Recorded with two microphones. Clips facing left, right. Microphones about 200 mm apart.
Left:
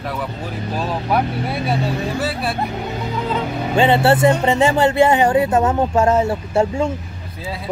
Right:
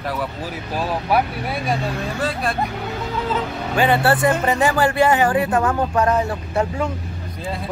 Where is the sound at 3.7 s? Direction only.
25° left (ahead or behind).